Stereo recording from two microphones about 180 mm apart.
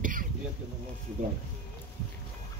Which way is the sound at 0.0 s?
50° right (ahead or behind).